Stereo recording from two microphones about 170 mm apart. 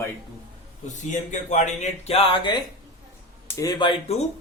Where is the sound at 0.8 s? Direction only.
45° left (ahead or behind).